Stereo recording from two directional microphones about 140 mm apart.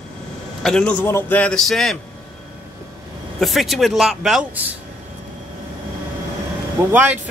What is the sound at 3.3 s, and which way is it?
A man's voice, centre (ahead or behind).